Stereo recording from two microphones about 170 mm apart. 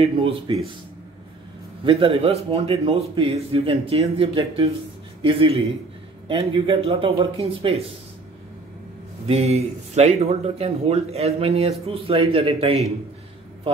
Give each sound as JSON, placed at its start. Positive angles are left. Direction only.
{"t": 0.0, "sound": "speech", "side_deg": -35}
{"t": 1.9, "sound": "speech", "side_deg": -30}
{"t": 9.3, "sound": "speech", "side_deg": -40}